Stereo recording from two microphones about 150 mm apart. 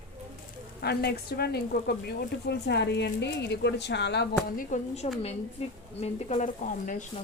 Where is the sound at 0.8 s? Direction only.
90° left.